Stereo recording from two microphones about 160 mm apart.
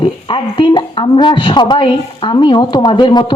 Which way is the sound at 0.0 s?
30° left (ahead or behind).